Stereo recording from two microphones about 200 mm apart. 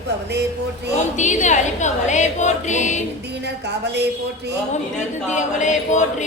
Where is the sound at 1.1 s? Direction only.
35° left (ahead or behind).